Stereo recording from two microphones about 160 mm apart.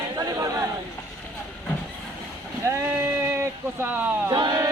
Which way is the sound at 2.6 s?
20° right (ahead or behind).